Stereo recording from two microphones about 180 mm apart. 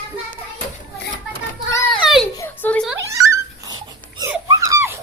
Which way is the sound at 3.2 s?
20° right (ahead or behind).